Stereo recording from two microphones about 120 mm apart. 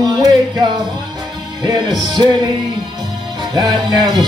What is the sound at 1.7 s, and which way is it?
Music, 35° right (ahead or behind).